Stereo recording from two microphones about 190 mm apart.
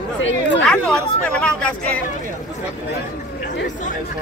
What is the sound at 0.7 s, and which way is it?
Speech, 5° left (ahead or behind).